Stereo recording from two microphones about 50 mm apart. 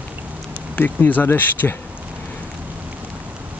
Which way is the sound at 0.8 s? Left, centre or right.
Left.